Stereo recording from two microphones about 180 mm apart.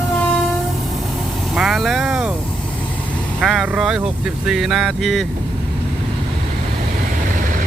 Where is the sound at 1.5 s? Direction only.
Centre (ahead or behind).